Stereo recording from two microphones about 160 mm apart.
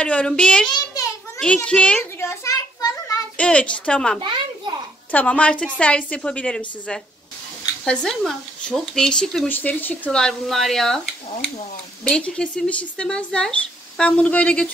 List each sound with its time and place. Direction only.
0.0 s speech: 5° left (ahead or behind)
0.7 s child singing: 20° left (ahead or behind)
1.4 s a sound: 5° left (ahead or behind)
3.3 s speech: 10° left (ahead or behind)
4.2 s a sound: 30° right (ahead or behind)
5.1 s speech: 10° left (ahead or behind)
7.8 s speech: 5° left (ahead or behind)
12.0 s speech: 5° left (ahead or behind)